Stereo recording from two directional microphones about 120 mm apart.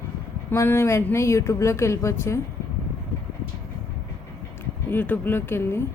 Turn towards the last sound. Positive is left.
turn(degrees=20)  # may be behind; listen again after turning